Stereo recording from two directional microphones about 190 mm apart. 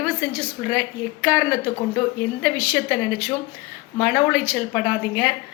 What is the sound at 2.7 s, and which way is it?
A woman's voice, 5° right (ahead or behind).